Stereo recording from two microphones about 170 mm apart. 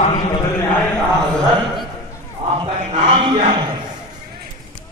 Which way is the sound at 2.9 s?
35° right (ahead or behind).